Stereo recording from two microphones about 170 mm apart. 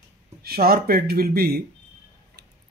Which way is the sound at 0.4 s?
65° right (ahead or behind).